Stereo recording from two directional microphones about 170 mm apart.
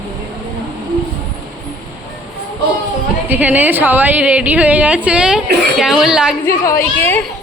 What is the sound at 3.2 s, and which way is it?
A woman's voice, 10° right (ahead or behind).